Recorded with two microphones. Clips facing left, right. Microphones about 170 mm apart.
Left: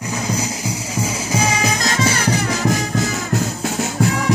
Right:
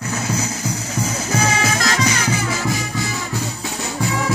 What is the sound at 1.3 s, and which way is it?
Music, 15° left (ahead or behind).